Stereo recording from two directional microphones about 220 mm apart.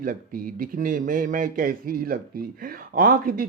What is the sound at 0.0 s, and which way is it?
Speech, 40° right (ahead or behind).